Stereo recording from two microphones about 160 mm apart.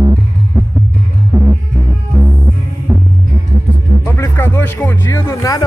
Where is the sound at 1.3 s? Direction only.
15° right (ahead or behind).